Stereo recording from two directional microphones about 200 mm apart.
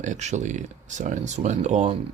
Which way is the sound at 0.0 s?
35° right (ahead or behind).